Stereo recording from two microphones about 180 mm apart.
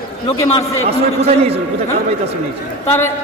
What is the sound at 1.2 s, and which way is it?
Speech, 35° right (ahead or behind).